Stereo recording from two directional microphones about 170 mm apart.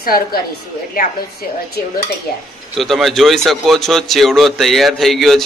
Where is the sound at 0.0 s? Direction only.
60° left (ahead or behind).